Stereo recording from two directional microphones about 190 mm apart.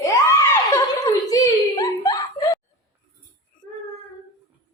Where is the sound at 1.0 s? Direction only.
20° left (ahead or behind).